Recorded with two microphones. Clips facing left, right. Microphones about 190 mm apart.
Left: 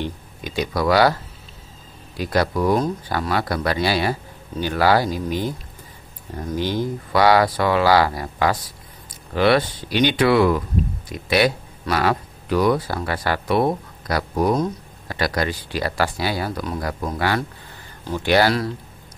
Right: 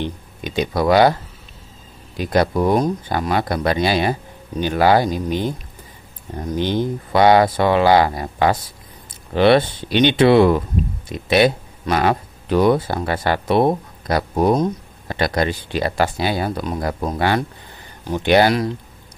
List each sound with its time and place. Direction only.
0.0 s speech: 20° right (ahead or behind)
2.1 s speech: 20° right (ahead or behind)